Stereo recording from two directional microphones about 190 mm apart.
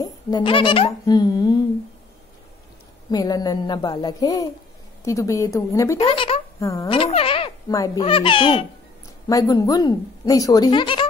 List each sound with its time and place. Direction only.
0.0 s speech: 25° left (ahead or behind)
3.1 s a woman's voice: 20° left (ahead or behind)
5.9 s speech: 30° left (ahead or behind)
6.6 s a woman's voice: 15° left (ahead or behind)
6.9 s a sound: 30° left (ahead or behind)
8.0 s speech: 30° left (ahead or behind)